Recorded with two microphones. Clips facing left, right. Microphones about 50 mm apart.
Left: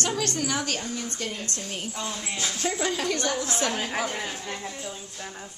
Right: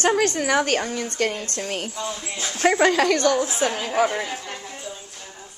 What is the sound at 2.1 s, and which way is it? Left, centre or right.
Speech, centre.